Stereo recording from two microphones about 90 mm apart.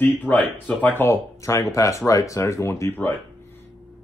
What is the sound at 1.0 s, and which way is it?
Speech, 35° left (ahead or behind).